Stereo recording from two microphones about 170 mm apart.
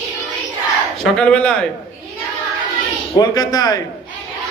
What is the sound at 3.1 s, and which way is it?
Speech, 25° left (ahead or behind).